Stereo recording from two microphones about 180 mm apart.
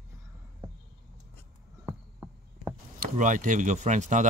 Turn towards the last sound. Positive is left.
turn(degrees=-45)  # may be behind; listen again after turning